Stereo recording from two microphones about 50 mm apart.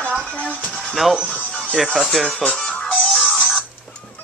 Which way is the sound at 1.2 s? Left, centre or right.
Left.